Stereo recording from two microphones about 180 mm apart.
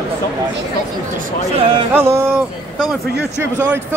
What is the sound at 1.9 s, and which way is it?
Speech, 10° right (ahead or behind).